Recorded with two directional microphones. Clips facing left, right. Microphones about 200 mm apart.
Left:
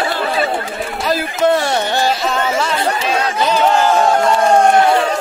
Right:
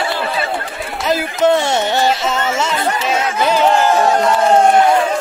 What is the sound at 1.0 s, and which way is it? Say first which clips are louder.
Speech: right 1 dB; 20° right (ahead or behind).